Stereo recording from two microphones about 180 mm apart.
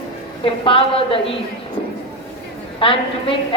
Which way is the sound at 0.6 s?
30° left (ahead or behind).